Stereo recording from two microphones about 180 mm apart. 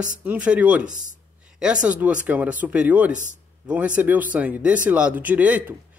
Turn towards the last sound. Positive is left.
turn(degrees=-10)  # may be behind; listen again after turning